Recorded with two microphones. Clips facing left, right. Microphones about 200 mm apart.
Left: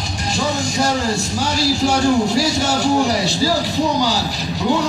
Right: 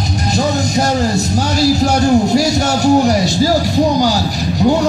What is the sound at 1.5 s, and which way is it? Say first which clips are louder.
Music: right 5 dB; 40° right (ahead or behind).